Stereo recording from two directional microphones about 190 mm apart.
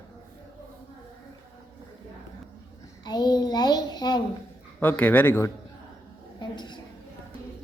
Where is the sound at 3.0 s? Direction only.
20° left (ahead or behind).